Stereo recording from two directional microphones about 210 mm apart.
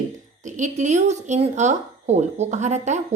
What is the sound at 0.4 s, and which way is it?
A woman's voice, 35° right (ahead or behind).